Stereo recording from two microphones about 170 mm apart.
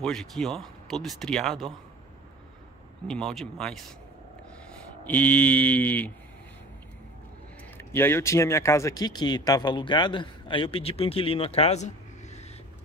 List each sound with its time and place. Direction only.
0.0 s speech: 5° left (ahead or behind)
3.1 s speech: 5° left (ahead or behind)
5.0 s mantra: 10° left (ahead or behind)
7.7 s speech: 15° left (ahead or behind); by 12.4 s 40° left (ahead or behind)